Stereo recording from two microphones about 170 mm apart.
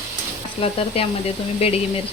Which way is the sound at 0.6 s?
35° left (ahead or behind).